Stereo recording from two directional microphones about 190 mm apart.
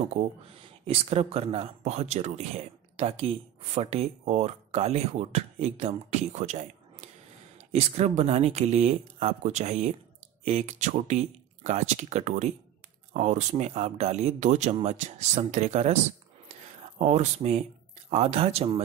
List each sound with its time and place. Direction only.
0.2 s speech: 35° right (ahead or behind)
16.4 s a sound: 35° right (ahead or behind)
18.1 s speech: 35° right (ahead or behind)